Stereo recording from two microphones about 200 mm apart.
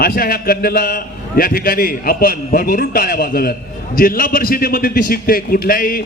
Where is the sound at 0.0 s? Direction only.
50° left (ahead or behind).